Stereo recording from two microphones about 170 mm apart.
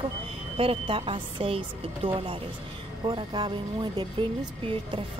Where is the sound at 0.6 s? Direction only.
35° right (ahead or behind).